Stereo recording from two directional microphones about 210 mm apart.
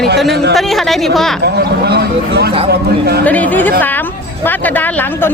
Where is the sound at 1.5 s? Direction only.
50° right (ahead or behind).